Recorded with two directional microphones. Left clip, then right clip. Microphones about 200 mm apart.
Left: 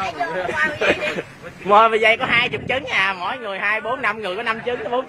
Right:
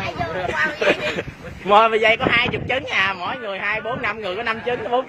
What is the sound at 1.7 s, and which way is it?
A man's voice, centre (ahead or behind).